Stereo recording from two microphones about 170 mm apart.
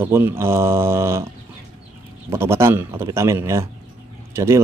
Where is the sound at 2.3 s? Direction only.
15° right (ahead or behind).